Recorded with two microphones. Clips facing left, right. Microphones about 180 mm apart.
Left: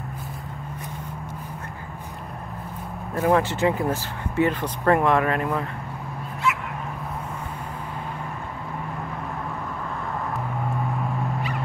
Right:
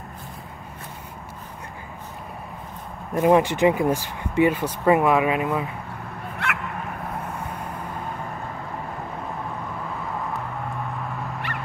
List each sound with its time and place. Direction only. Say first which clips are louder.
3.2 s speech: right 3 dB; 15° right (ahead or behind)
6.4 s dog: left 5 dB; 65° right (ahead or behind)